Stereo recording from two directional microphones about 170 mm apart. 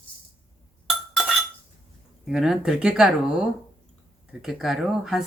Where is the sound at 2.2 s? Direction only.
Centre (ahead or behind).